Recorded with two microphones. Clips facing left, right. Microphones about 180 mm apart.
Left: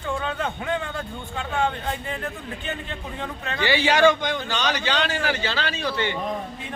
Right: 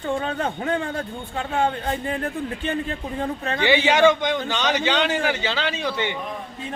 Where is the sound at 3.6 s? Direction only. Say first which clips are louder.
Right 2 dB; 20° right (ahead or behind).